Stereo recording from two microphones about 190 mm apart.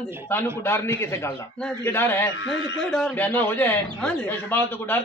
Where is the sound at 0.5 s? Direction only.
10° left (ahead or behind).